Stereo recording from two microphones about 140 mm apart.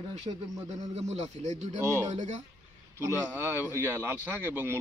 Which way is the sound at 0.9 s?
55° right (ahead or behind).